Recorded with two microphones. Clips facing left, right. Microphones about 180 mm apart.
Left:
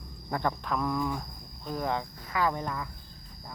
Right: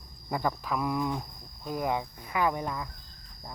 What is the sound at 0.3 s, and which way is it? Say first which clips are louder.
Speech: even; 5° right (ahead or behind).